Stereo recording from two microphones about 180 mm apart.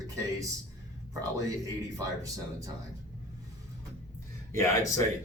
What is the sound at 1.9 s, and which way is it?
Speech, 20° right (ahead or behind).